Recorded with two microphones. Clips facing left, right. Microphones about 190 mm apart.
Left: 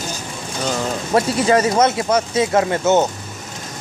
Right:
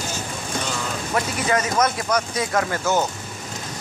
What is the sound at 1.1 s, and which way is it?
Speech, 30° left (ahead or behind).